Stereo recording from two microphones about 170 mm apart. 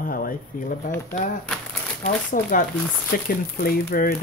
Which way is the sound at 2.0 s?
50° left (ahead or behind).